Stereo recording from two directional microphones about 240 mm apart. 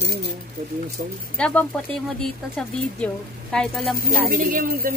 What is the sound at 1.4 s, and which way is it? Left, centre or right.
Speech, centre.